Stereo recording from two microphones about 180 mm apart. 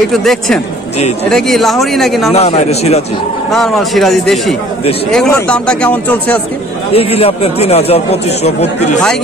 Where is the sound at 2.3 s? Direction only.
35° left (ahead or behind).